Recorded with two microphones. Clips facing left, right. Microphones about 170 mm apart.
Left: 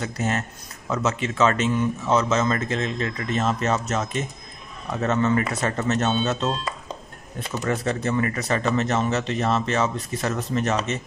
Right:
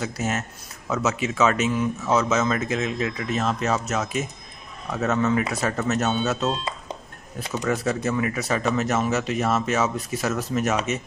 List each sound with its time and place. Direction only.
0.0 s speech: 5° right (ahead or behind)
6.5 s a sound: 20° right (ahead or behind)
7.6 s speech: centre (ahead or behind)